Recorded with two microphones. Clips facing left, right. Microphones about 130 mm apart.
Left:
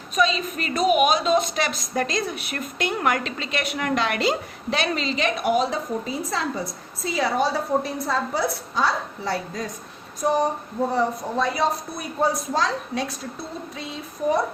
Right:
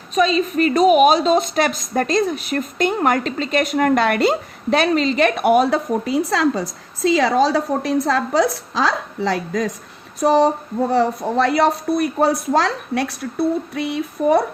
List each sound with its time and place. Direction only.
0.1 s a woman's voice: 40° right (ahead or behind)
1.5 s a woman's voice: 50° right (ahead or behind); by 9.7 s 80° right
10.2 s a sound: 80° right
10.9 s speech: 80° right